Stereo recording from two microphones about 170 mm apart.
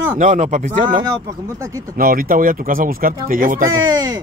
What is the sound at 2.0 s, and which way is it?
Speech, 60° right (ahead or behind).